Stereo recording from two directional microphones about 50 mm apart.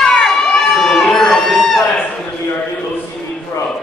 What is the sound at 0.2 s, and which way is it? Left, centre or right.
Crowd, centre.